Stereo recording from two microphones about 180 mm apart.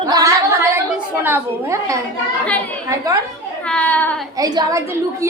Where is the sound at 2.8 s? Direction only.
15° right (ahead or behind).